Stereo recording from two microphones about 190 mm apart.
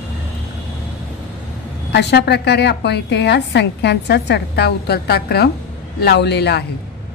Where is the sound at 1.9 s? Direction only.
60° left (ahead or behind).